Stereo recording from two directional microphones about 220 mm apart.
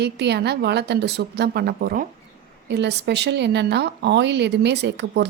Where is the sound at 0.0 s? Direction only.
50° right (ahead or behind).